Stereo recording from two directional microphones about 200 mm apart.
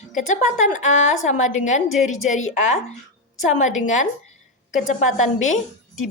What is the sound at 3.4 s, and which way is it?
A woman's voice, 40° left (ahead or behind).